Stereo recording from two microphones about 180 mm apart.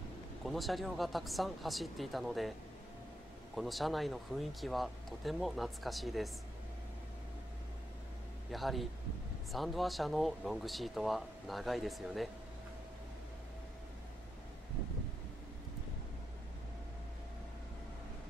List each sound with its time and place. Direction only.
0.5 s speech: centre (ahead or behind)
3.5 s speech: centre (ahead or behind)
8.5 s speech: centre (ahead or behind)